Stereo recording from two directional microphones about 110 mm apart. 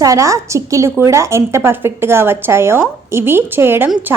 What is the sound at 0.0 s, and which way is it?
A woman's voice, 30° right (ahead or behind).